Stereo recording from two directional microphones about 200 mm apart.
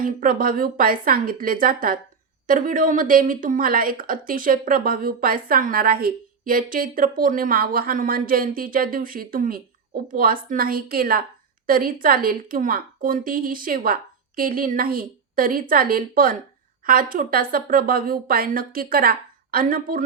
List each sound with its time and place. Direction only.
0.0 s a woman's voice: 45° right (ahead or behind)